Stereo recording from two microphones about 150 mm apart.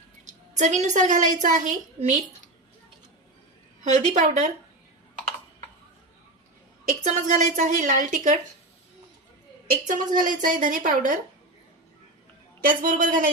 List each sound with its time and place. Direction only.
0.3 s a woman's voice: 50° right (ahead or behind)
3.8 s a woman's voice: 50° right (ahead or behind)
6.8 s a sound: 55° right (ahead or behind)
7.5 s a woman's voice: 55° right (ahead or behind)
9.8 s a woman's voice: 65° right (ahead or behind)
12.6 s a woman's voice: 65° right (ahead or behind)